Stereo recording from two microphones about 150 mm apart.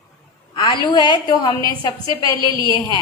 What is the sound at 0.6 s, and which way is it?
A woman's voice, 30° left (ahead or behind).